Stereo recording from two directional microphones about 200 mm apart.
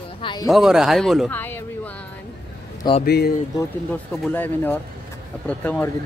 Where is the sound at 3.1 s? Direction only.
50° left (ahead or behind).